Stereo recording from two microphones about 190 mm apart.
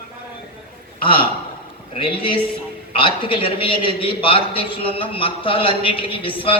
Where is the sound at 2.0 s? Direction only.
25° left (ahead or behind).